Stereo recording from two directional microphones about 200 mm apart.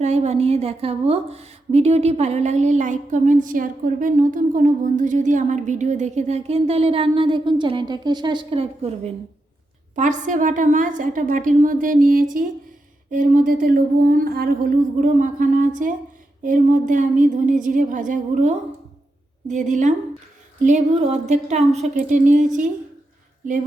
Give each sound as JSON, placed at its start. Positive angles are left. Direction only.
{"t": 0.0, "sound": "a woman's voice", "side_deg": -35}
{"t": 23.4, "sound": "a woman's voice", "side_deg": -40}